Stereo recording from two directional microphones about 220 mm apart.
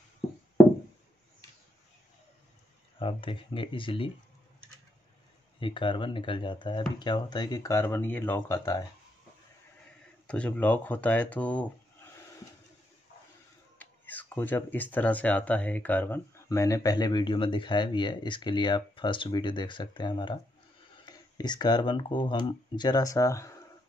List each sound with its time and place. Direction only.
3.0 s speech: 25° left (ahead or behind)
5.6 s speech: 25° left (ahead or behind)
10.2 s speech: 5° left (ahead or behind)
13.7 s speech: 10° left (ahead or behind)